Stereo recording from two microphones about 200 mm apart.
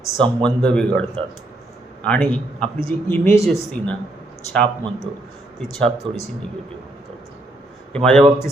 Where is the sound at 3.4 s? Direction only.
Centre (ahead or behind).